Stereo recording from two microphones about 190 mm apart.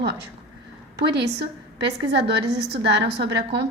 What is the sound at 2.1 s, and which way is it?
A woman's voice, 60° right (ahead or behind).